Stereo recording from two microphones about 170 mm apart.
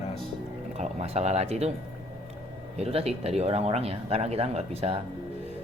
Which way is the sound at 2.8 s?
35° right (ahead or behind).